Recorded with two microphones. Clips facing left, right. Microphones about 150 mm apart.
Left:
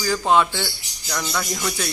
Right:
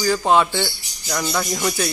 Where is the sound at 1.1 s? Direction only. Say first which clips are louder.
Right 3 dB; 15° right (ahead or behind).